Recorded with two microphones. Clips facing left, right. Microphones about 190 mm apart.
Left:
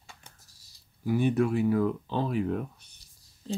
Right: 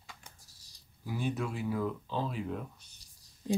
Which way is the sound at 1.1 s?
60° left (ahead or behind).